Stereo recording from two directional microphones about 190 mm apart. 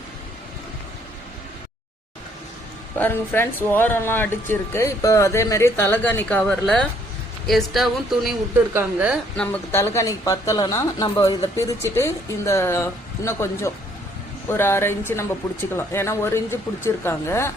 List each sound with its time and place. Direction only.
3.0 s speech: 10° left (ahead or behind); by 9.1 s 10° right (ahead or behind)
9.4 s speech: 10° left (ahead or behind)